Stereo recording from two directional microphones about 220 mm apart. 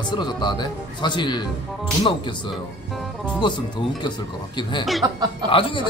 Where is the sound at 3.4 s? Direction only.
20° left (ahead or behind).